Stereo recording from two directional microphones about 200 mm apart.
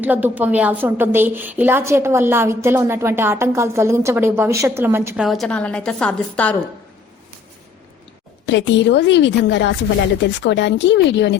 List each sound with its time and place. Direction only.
0.0 s a woman's voice: 10° right (ahead or behind); by 6.6 s 5° left (ahead or behind)
8.4 s a woman's voice: 65° left (ahead or behind)